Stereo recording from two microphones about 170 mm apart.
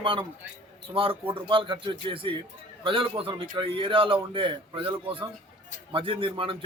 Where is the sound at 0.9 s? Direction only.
30° right (ahead or behind).